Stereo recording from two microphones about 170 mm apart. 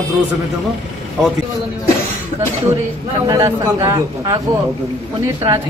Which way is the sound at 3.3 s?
20° right (ahead or behind).